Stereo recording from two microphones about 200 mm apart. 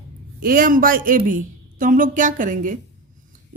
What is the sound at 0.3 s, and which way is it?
A woman's voice, 45° right (ahead or behind).